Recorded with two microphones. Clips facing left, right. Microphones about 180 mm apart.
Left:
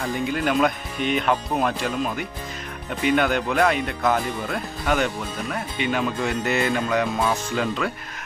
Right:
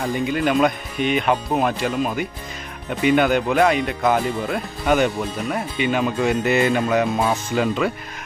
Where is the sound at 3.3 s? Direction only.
10° right (ahead or behind).